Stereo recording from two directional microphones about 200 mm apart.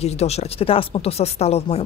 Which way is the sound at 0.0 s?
30° left (ahead or behind).